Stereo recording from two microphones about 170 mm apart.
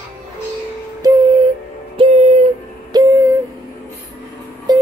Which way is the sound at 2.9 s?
25° right (ahead or behind).